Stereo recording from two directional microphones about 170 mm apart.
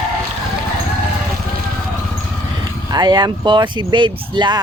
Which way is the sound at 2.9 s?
25° right (ahead or behind).